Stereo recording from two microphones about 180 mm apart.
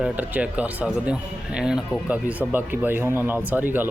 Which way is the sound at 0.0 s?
5° right (ahead or behind).